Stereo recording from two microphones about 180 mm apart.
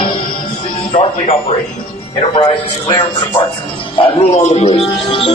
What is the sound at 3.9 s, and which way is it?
Speech, 30° left (ahead or behind).